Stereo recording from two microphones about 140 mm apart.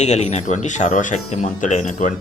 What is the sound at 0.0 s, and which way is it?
Speech, 55° left (ahead or behind).